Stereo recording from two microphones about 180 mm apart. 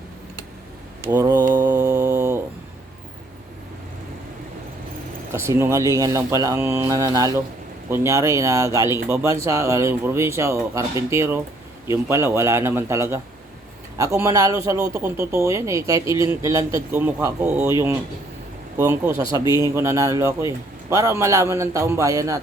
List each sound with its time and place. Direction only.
1.0 s mantra: 15° right (ahead or behind)
5.3 s speech: 15° right (ahead or behind)